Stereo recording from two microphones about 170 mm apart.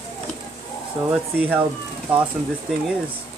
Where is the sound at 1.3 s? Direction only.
10° right (ahead or behind).